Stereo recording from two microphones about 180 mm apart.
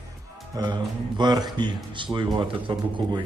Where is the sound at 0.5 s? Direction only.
25° right (ahead or behind).